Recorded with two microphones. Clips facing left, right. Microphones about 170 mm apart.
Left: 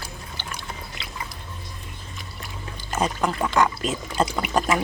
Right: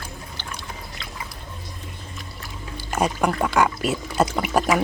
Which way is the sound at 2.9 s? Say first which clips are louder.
Right 2 dB; 10° right (ahead or behind).